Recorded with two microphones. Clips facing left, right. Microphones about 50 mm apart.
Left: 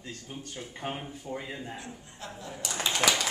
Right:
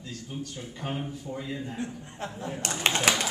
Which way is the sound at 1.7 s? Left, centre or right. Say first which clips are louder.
Right 7 dB; right.